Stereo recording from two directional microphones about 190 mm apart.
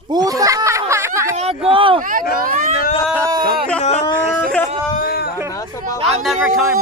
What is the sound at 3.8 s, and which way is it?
Speech, 35° left (ahead or behind).